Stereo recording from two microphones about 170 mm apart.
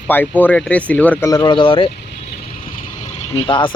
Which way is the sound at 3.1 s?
30° left (ahead or behind).